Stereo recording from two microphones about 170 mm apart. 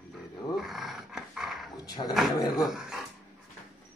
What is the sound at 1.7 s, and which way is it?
Speech, 20° left (ahead or behind).